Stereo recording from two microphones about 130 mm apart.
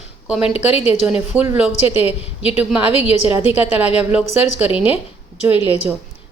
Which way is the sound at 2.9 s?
50° left (ahead or behind).